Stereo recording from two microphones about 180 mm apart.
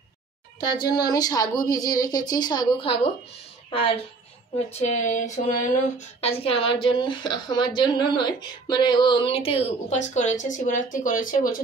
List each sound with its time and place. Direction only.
0.6 s a woman's voice: 25° left (ahead or behind); by 11.6 s 50° left (ahead or behind)